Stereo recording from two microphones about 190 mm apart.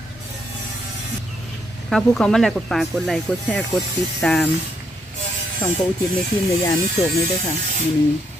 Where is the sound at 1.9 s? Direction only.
Centre (ahead or behind).